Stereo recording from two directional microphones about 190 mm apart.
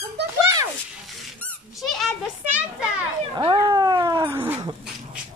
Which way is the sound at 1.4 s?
5° left (ahead or behind).